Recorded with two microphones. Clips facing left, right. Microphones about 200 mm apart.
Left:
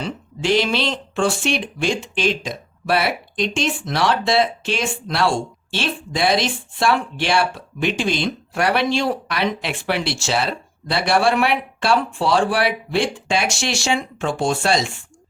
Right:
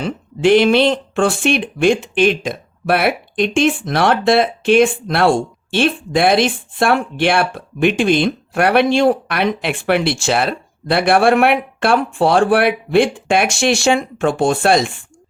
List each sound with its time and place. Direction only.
0.0 s speech: 55° right (ahead or behind)